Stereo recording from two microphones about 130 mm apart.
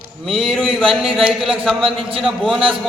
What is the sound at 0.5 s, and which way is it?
Speech, 5° left (ahead or behind).